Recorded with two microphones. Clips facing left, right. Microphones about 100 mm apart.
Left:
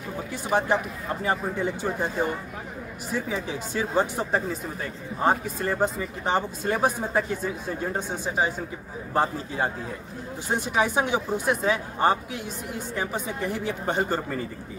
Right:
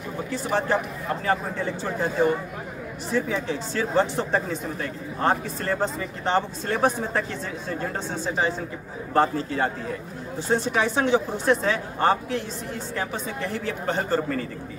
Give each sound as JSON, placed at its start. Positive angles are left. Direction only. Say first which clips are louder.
{"t": 0.3, "sound": "speech", "louder": "even", "side_deg": 15}
{"t": 3.1, "sound": "speech", "louder": "right 4 dB", "side_deg": 10}